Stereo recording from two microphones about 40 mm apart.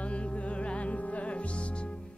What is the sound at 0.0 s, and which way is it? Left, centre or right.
Music, left.